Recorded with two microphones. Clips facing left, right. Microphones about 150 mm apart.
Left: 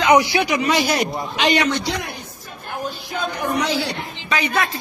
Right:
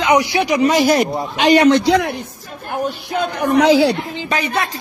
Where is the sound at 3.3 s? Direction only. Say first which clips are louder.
Right 8 dB; 75° right (ahead or behind).